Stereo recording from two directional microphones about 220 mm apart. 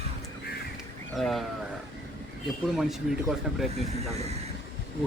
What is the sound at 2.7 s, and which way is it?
Speech, centre (ahead or behind).